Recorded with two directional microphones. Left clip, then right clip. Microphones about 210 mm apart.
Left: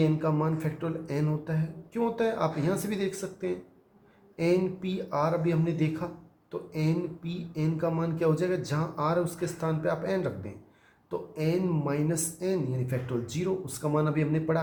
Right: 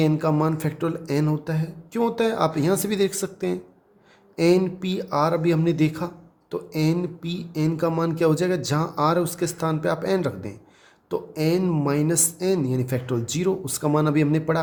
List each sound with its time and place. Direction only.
0.0 s speech: 55° right (ahead or behind)